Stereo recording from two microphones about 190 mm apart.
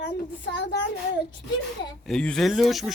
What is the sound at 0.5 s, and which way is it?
Child singing, 65° left (ahead or behind).